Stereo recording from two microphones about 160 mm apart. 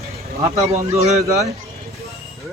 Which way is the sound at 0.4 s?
20° right (ahead or behind).